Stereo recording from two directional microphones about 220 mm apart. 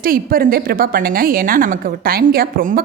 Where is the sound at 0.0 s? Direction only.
40° right (ahead or behind).